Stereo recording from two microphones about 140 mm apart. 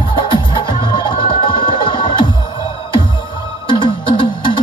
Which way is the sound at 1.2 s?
35° left (ahead or behind).